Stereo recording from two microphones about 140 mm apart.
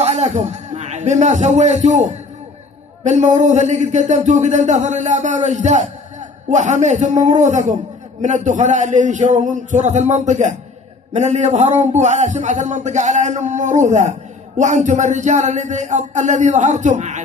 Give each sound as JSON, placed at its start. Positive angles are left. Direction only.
{"t": 0.0, "sound": "a man's voice", "side_deg": -50}